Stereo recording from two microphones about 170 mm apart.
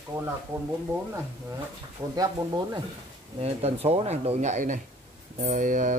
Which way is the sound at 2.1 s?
20° right (ahead or behind).